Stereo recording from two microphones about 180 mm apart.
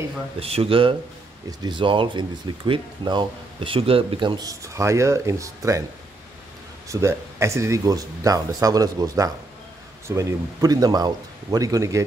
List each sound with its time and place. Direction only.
0.4 s speech: 30° right (ahead or behind); by 5.9 s 15° right (ahead or behind)
6.9 s speech: 15° right (ahead or behind)